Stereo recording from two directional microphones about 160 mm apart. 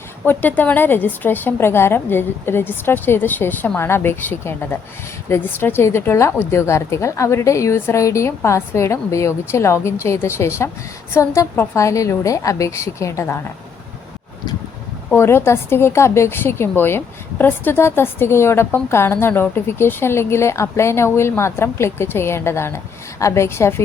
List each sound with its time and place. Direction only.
0.3 s a woman's voice: 10° left (ahead or behind)
15.1 s a woman's voice: 15° left (ahead or behind)